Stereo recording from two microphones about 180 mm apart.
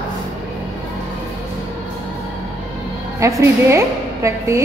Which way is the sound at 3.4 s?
15° right (ahead or behind).